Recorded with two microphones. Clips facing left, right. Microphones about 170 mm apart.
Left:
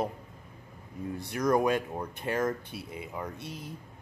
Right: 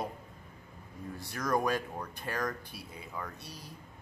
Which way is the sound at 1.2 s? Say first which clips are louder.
Left 5 dB; 20° left (ahead or behind).